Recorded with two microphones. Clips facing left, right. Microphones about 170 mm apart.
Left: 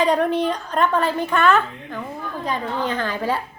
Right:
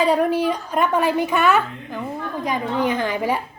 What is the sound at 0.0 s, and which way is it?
A woman's voice, 5° right (ahead or behind).